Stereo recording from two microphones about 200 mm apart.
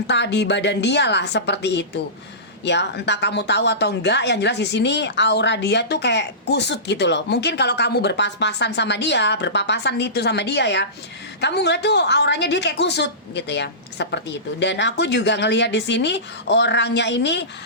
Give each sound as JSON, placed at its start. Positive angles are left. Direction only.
{"t": 0.1, "sound": "speech", "side_deg": 60}